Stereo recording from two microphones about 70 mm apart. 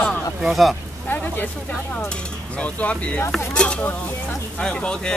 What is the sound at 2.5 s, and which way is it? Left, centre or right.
Speech, centre.